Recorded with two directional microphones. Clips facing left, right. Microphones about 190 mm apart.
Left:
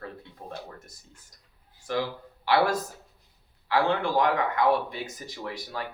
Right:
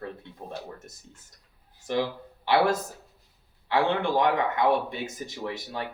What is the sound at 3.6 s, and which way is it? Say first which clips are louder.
Speech: even; 25° right (ahead or behind).